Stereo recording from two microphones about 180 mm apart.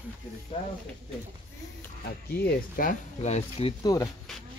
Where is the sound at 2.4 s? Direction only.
55° left (ahead or behind).